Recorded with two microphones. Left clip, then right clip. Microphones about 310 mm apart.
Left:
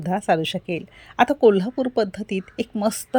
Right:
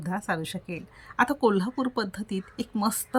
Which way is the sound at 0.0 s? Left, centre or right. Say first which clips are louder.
Left 10 dB; centre.